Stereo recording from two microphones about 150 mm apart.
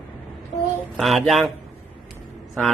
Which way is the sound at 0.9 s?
Centre (ahead or behind).